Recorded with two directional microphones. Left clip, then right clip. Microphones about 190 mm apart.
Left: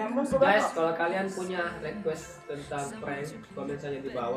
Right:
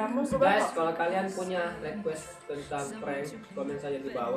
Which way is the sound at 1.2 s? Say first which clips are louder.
Even; centre (ahead or behind).